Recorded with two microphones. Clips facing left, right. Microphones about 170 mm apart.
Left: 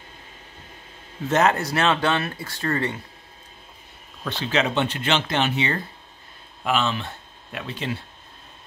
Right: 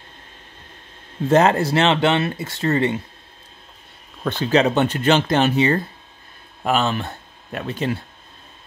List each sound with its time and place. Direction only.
1.3 s speech: 30° right (ahead or behind)
4.2 s speech: 45° right (ahead or behind)